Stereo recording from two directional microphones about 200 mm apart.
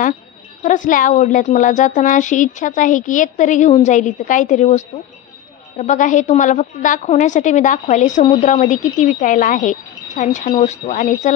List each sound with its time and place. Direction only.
0.6 s a woman's voice: 40° left (ahead or behind)